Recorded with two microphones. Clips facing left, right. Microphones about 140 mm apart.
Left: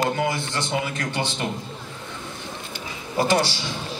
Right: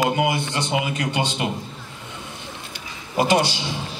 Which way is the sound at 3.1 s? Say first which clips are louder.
Right 2 dB; 15° right (ahead or behind).